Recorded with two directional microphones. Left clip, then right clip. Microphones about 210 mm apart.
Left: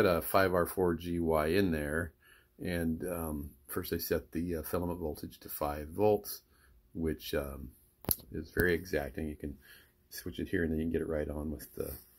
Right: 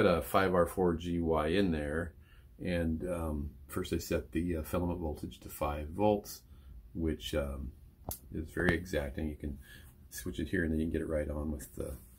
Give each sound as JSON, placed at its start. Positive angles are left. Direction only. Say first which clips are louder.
{"t": 0.0, "sound": "speech", "louder": "left 1 dB", "side_deg": 25}
{"t": 8.8, "sound": "speech", "louder": "left 1 dB", "side_deg": 30}